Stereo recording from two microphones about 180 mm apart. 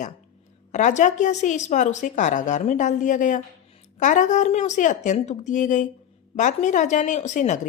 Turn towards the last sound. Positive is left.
turn(degrees=40)  # may be behind; listen again after turning